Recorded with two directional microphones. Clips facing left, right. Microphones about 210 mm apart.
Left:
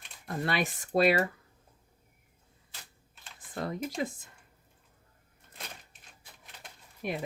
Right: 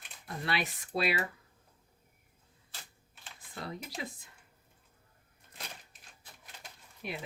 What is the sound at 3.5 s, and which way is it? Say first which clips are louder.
Speech: left 8 dB; 50° left (ahead or behind).